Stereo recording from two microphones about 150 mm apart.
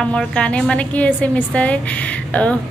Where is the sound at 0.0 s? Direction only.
5° left (ahead or behind).